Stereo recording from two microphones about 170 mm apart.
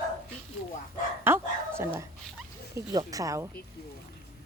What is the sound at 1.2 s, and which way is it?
Bow-wow, 15° right (ahead or behind).